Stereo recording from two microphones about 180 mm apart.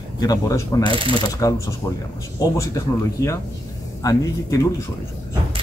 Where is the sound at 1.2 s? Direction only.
20° left (ahead or behind).